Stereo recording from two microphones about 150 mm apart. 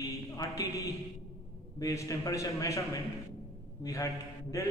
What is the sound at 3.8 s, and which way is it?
Speech, 20° left (ahead or behind).